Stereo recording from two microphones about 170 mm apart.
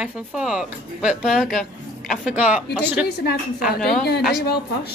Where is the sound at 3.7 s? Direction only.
Centre (ahead or behind).